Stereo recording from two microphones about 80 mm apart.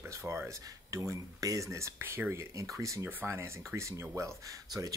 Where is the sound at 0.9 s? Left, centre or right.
Right.